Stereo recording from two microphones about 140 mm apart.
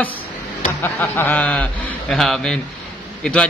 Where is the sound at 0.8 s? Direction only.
15° left (ahead or behind).